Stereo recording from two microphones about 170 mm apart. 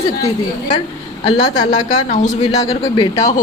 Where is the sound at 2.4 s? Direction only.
20° left (ahead or behind).